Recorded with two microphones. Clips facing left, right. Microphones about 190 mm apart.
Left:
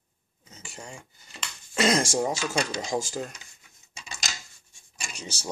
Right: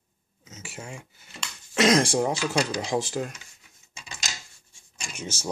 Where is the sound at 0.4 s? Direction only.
5° right (ahead or behind).